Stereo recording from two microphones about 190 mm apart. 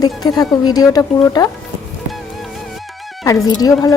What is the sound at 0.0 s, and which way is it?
Speech, 20° left (ahead or behind).